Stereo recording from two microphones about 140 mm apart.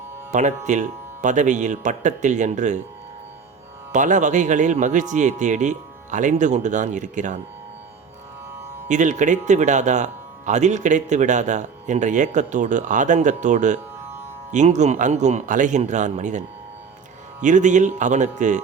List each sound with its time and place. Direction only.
0.3 s speech: 60° right (ahead or behind)
3.9 s speech: 60° right (ahead or behind)
8.9 s speech: 60° right (ahead or behind)
17.4 s speech: 60° right (ahead or behind)